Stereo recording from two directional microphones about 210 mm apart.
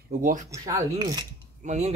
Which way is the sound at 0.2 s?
40° right (ahead or behind).